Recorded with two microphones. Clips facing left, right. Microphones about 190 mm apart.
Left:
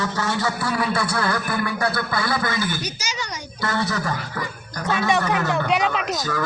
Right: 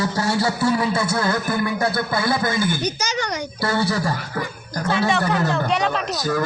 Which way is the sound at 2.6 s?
55° right (ahead or behind).